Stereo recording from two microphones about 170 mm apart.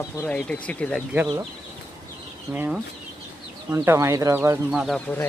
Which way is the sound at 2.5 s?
10° right (ahead or behind).